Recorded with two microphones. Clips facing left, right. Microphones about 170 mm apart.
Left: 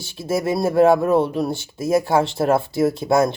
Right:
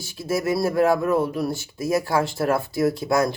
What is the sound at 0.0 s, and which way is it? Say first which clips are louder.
Speech: left 2 dB; 25° left (ahead or behind).